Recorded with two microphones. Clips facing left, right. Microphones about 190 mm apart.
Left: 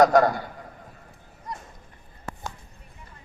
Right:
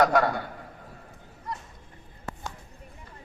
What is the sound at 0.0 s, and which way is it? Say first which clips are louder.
Speech: left 5 dB; 40° left (ahead or behind).